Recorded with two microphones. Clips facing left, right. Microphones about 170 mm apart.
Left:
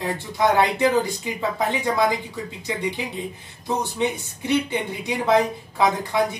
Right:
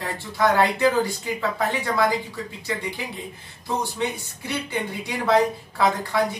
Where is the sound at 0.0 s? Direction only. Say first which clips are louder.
Left 1 dB; 20° left (ahead or behind).